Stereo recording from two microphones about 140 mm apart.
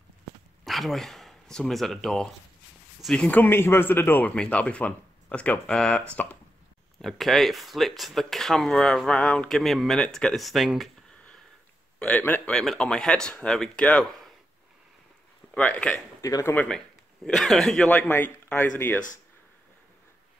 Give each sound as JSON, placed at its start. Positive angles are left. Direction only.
{"t": 0.7, "sound": "speech", "side_deg": 0}
{"t": 15.5, "sound": "speech", "side_deg": 10}
{"t": 16.2, "sound": "speech", "side_deg": 25}
{"t": 16.5, "sound": "speech", "side_deg": 5}